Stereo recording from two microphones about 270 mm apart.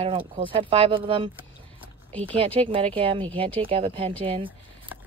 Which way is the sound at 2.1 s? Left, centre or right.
Centre.